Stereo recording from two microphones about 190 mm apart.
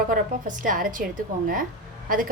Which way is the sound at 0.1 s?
45° right (ahead or behind).